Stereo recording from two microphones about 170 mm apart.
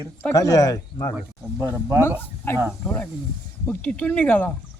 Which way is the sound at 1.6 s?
20° right (ahead or behind).